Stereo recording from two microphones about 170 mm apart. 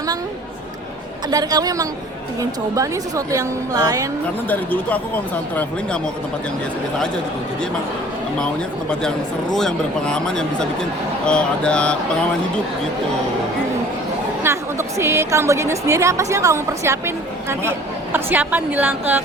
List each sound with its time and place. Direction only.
1.3 s a woman's voice: 20° right (ahead or behind)
4.4 s speech: 10° left (ahead or behind)
9.6 s speech: 5° left (ahead or behind)
14.4 s a woman's voice: 15° right (ahead or behind)